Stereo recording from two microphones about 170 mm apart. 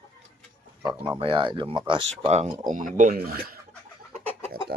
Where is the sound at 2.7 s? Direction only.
50° right (ahead or behind).